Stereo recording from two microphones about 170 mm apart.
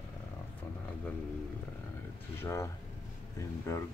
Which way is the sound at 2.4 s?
15° left (ahead or behind).